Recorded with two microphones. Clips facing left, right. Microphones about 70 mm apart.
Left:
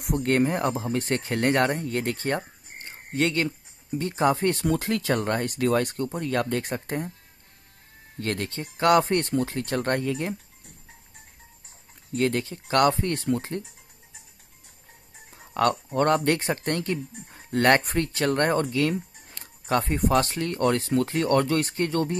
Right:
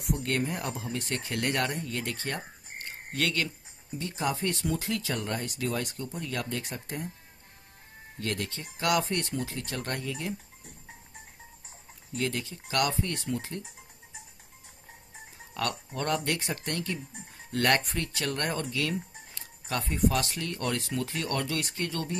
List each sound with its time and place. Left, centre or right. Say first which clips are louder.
0.0 s speech: left 7 dB; left
2.8 s a sound: left 6 dB; left
3.9 s speech: left 8 dB; left
8.2 s speech: left 4 dB; left
12.1 s speech: left 7 dB; left
15.5 s speech: left 10 dB; left